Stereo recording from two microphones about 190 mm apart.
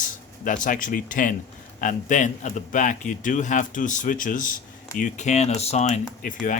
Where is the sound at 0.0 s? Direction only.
45° left (ahead or behind).